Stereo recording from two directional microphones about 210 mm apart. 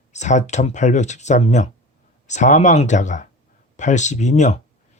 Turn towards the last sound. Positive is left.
turn(degrees=35)  # may be behind; listen again after turning